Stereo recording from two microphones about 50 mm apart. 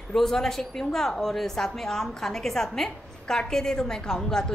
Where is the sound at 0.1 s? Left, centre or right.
Centre.